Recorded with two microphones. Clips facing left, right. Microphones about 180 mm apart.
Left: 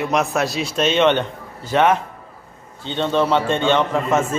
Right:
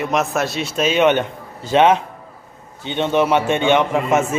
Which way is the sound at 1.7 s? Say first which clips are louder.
Right 3 dB; 20° right (ahead or behind).